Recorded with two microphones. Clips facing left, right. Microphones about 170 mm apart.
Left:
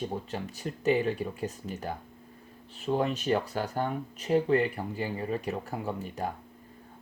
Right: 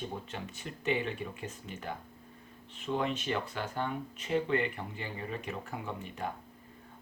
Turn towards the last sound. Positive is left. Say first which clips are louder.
# left 5 dB
turn(degrees=40)  # may be behind; listen again after turning